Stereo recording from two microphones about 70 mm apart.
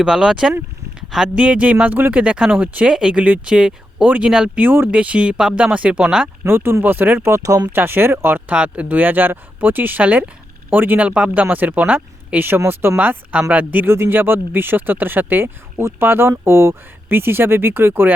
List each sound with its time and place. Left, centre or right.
0.0 s speech: centre
4.6 s speech: right
4.9 s speech: centre
6.4 s speech: right
7.8 s speech: right
8.4 s speech: centre
13.0 s speech: centre